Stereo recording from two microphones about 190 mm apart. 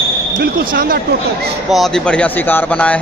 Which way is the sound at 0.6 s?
50° right (ahead or behind).